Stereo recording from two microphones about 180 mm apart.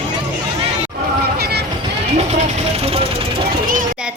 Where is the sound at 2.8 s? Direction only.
35° right (ahead or behind).